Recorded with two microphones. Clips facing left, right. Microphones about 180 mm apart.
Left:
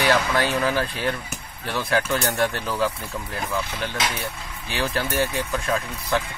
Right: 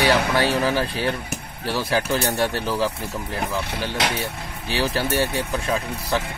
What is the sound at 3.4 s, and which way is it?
Speech, 70° right (ahead or behind).